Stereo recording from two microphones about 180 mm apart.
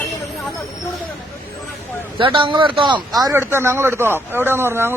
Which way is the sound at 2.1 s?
30° right (ahead or behind).